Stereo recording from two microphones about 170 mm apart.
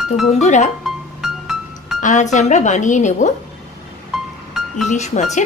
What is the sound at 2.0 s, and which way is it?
Chink, 50° left (ahead or behind).